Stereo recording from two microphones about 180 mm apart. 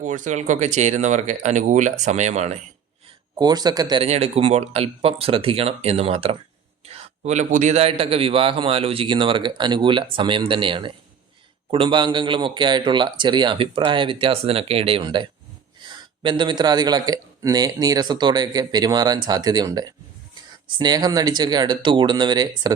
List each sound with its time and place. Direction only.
0.0 s speech: 45° right (ahead or behind)
3.3 s a man's voice: 20° right (ahead or behind)
4.0 s a man's voice: 35° right (ahead or behind)